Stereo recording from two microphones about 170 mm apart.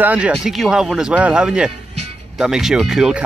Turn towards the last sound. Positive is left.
turn(degrees=-5)  # may be behind; listen again after turning